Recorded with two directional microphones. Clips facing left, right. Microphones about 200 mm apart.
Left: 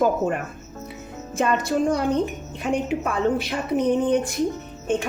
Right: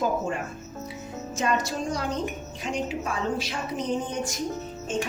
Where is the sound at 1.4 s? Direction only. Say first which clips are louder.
Left 6 dB; 55° left (ahead or behind).